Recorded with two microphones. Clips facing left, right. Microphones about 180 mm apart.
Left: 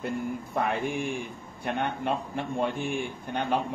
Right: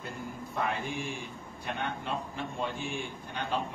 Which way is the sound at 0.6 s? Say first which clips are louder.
Left 5 dB; 60° left (ahead or behind).